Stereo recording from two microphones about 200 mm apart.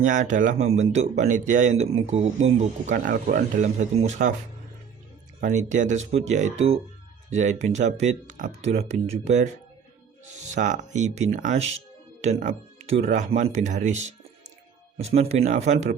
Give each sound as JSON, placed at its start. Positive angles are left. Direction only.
{"t": 0.0, "sound": "speech", "side_deg": -40}
{"t": 5.4, "sound": "speech", "side_deg": -35}
{"t": 10.5, "sound": "speech", "side_deg": -40}